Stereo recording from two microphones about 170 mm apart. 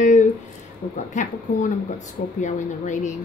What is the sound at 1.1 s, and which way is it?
Speech, 45° left (ahead or behind).